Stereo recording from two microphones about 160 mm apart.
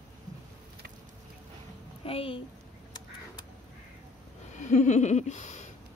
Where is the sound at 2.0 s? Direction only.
35° left (ahead or behind).